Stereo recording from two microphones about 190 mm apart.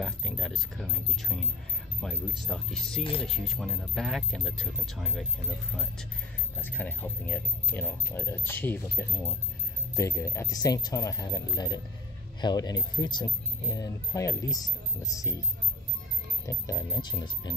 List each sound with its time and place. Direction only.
0.0 s speech: 5° left (ahead or behind)
2.0 s speech: centre (ahead or behind)
3.0 s speech: 30° left (ahead or behind)
3.3 s speech: centre (ahead or behind)
6.6 s speech: 10° left (ahead or behind)
16.4 s speech: 15° left (ahead or behind)